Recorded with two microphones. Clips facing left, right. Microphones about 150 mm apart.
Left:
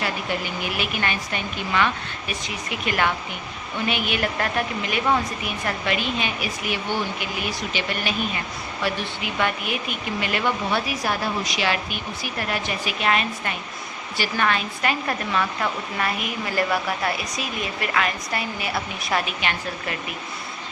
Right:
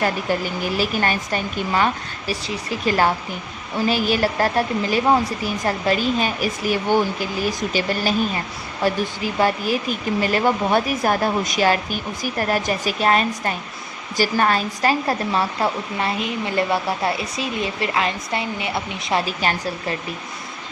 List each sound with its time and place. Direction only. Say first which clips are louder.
0.0 s speech: right 5 dB; 40° right (ahead or behind); by 19.3 s 25° right (ahead or behind)
19.4 s speech: right 4 dB; 40° right (ahead or behind)